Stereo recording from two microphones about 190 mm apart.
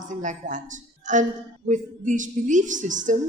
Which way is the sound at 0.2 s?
40° right (ahead or behind).